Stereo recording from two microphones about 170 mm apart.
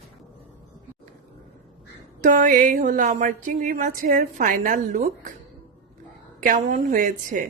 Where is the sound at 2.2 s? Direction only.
50° right (ahead or behind).